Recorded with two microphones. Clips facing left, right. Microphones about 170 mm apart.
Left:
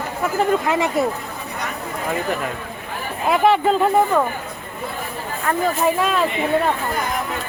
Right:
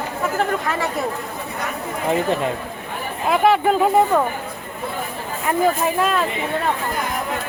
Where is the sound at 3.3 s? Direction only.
Centre (ahead or behind).